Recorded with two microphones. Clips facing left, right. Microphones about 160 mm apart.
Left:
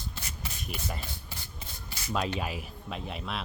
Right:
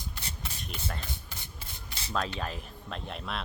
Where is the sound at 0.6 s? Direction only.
5° left (ahead or behind).